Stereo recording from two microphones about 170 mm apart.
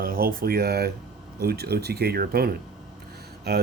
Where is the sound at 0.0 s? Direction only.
60° right (ahead or behind).